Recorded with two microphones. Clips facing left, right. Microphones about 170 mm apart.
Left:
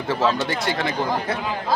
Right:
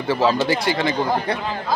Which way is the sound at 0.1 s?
Centre (ahead or behind).